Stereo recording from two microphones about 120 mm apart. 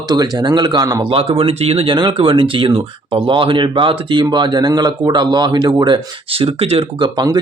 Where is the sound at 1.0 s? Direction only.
50° right (ahead or behind).